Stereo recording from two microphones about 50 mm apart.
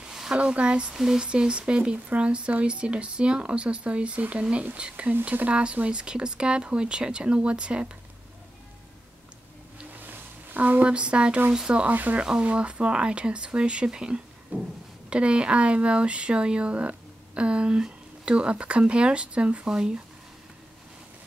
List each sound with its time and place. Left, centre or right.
0.0 s a sound: centre
0.4 s speech: right
0.9 s speech: centre
1.2 s speech: right
9.9 s a sound: right
10.9 s speech: right
11.8 s speech: right
12.3 s speech: centre